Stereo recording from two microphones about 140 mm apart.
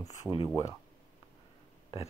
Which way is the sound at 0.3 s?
Centre (ahead or behind).